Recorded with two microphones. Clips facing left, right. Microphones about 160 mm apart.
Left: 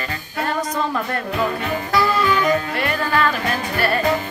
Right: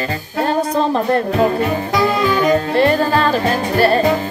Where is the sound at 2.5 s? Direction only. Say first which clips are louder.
Right 7 dB; 30° right (ahead or behind).